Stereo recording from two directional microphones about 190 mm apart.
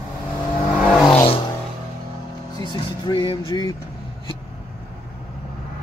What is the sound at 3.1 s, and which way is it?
Music, 25° left (ahead or behind).